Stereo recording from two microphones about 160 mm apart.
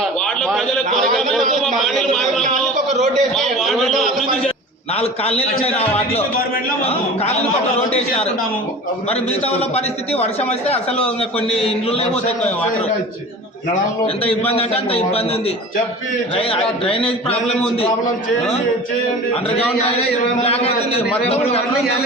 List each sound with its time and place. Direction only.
0.0 s a sound: centre (ahead or behind)
0.9 s a man's voice: centre (ahead or behind)
4.9 s a man's voice: 40° left (ahead or behind)
7.9 s a man's voice: 40° left (ahead or behind)
14.3 s a man's voice: 35° left (ahead or behind)
16.3 s a man's voice: 35° left (ahead or behind)
20.4 s a man's voice: 40° left (ahead or behind)